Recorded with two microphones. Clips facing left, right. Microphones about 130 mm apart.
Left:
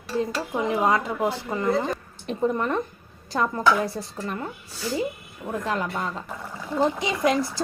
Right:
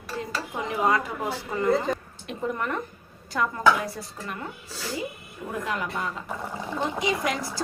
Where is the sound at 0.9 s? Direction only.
25° left (ahead or behind).